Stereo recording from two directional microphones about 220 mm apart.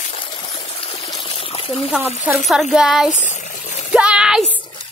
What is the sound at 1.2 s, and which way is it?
Water, 25° left (ahead or behind).